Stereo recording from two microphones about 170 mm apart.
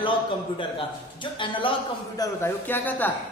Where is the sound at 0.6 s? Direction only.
30° left (ahead or behind).